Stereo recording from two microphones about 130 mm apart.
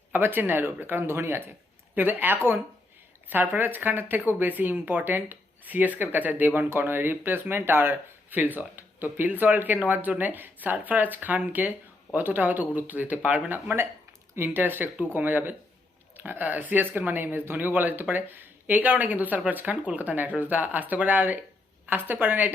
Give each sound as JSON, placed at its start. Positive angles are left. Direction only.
{"t": 0.1, "sound": "speech", "side_deg": -15}